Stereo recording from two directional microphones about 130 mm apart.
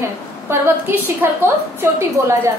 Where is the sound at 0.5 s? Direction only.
15° right (ahead or behind).